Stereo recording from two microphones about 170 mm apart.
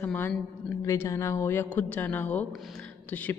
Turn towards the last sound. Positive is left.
turn(degrees=10)  # may be behind; listen again after turning